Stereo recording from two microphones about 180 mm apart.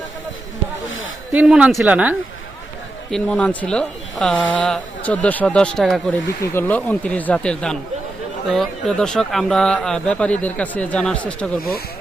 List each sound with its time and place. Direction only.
1.3 s a man's voice: 5° right (ahead or behind)
3.1 s a woman's voice: 5° left (ahead or behind)